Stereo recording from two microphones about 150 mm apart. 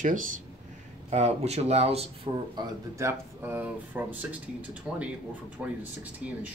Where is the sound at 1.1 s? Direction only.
45° right (ahead or behind).